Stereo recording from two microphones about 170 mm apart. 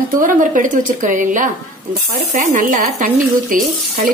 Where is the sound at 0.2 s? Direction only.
50° right (ahead or behind).